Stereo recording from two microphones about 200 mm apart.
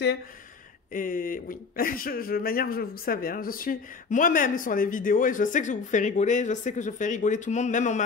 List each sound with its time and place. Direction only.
0.9 s speech: 45° left (ahead or behind)